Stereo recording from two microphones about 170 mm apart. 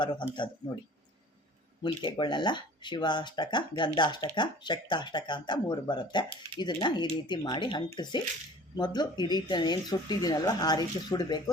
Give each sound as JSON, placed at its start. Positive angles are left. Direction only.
{"t": 0.0, "sound": "speech", "side_deg": 25}
{"t": 1.8, "sound": "speech", "side_deg": 30}